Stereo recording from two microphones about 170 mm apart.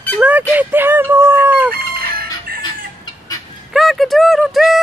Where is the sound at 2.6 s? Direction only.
25° left (ahead or behind).